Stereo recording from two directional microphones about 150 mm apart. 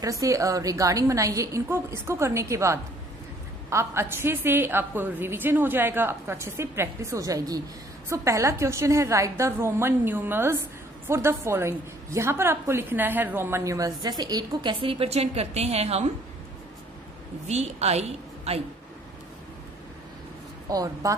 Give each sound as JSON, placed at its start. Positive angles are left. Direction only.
{"t": 0.0, "sound": "a woman's voice", "side_deg": -20}
{"t": 17.5, "sound": "a woman's voice", "side_deg": -45}
{"t": 20.7, "sound": "a woman's voice", "side_deg": -25}